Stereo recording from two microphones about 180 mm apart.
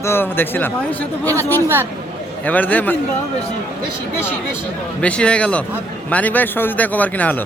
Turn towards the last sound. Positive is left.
turn(degrees=10)  # may be behind; listen again after turning